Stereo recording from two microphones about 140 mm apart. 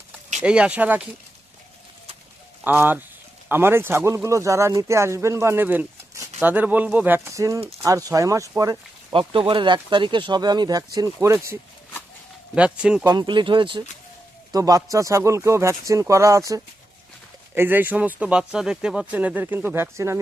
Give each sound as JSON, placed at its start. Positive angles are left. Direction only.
{"t": 0.4, "sound": "speech", "side_deg": -10}
{"t": 2.6, "sound": "speech", "side_deg": -15}
{"t": 9.1, "sound": "speech", "side_deg": -35}
{"t": 12.5, "sound": "speech", "side_deg": -10}
{"t": 13.1, "sound": "speech", "side_deg": -35}